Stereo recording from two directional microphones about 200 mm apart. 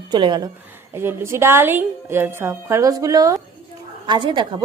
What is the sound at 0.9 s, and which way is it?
A woman's voice, 10° right (ahead or behind).